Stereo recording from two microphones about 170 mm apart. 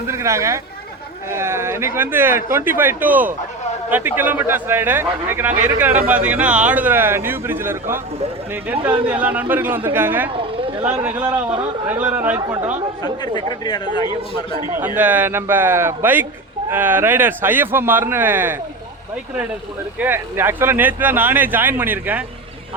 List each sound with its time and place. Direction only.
0.1 s speech: 15° right (ahead or behind)
11.3 s a man's voice: 25° right (ahead or behind)
11.9 s speech: 10° right (ahead or behind)
13.2 s speech: 25° left (ahead or behind)
14.9 s speech: 10° right (ahead or behind)
20.0 s speech: 15° right (ahead or behind)